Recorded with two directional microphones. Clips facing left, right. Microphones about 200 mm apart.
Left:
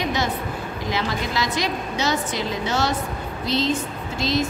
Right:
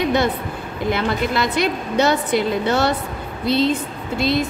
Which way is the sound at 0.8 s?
60° right (ahead or behind).